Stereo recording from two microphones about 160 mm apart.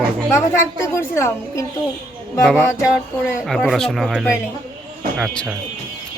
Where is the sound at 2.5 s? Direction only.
5° right (ahead or behind).